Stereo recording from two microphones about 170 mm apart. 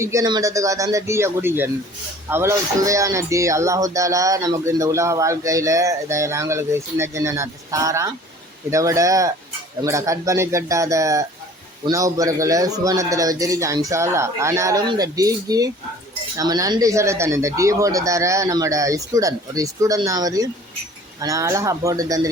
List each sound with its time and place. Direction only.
0.0 s speech: 20° right (ahead or behind)